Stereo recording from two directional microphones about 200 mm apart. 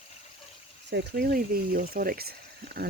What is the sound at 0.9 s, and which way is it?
Speech, 55° right (ahead or behind).